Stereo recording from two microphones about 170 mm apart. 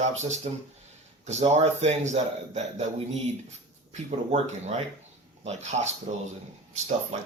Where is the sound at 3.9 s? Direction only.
40° right (ahead or behind).